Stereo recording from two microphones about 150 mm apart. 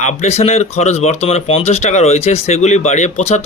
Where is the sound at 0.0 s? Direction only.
50° left (ahead or behind).